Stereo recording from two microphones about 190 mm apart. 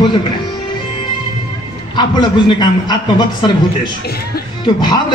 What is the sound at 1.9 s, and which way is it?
A man's voice, 20° left (ahead or behind).